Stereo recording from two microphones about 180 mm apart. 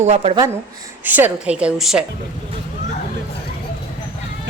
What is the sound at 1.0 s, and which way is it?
A woman's voice, 10° right (ahead or behind).